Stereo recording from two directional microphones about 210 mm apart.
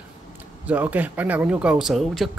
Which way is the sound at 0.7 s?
5° right (ahead or behind).